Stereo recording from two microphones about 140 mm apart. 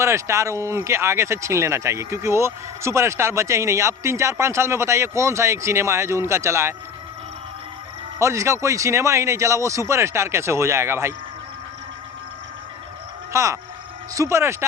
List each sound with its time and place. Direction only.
0.0 s speech: 20° right (ahead or behind)
8.2 s speech: 20° right (ahead or behind)
13.3 s speech: 20° right (ahead or behind)